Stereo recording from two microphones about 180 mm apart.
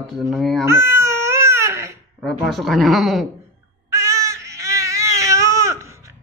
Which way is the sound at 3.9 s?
15° right (ahead or behind).